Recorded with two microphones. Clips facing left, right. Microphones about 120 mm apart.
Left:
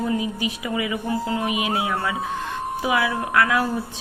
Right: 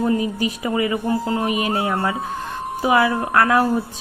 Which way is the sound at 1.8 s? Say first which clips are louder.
Right 3 dB; 40° right (ahead or behind).